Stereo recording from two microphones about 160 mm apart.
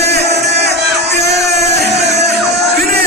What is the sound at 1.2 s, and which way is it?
Music, 90° right.